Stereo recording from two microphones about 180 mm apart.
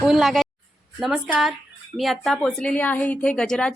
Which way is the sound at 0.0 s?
Centre (ahead or behind).